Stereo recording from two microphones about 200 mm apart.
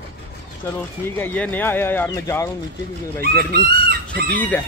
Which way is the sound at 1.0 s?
10° left (ahead or behind).